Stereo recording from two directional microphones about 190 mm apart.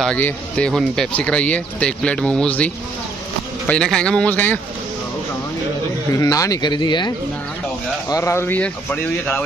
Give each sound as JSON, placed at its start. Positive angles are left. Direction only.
{"t": 0.0, "sound": "speech", "side_deg": 5}
{"t": 6.1, "sound": "speech", "side_deg": 15}